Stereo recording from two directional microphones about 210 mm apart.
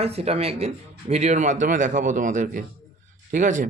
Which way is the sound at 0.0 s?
30° right (ahead or behind).